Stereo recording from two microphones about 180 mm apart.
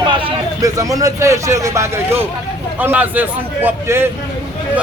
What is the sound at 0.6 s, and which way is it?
Speech, 20° right (ahead or behind).